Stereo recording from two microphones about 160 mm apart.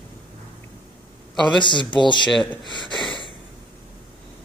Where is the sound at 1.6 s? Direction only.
30° left (ahead or behind).